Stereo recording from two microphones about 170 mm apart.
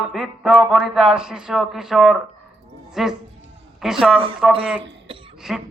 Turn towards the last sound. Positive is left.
turn(degrees=-5)  # may be behind; listen again after turning